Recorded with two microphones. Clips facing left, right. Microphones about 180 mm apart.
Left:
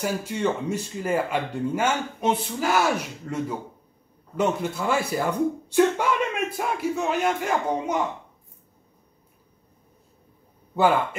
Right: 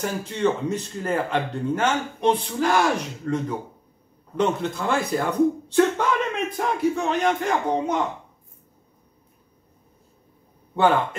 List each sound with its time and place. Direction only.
0.0 s speech: 10° left (ahead or behind)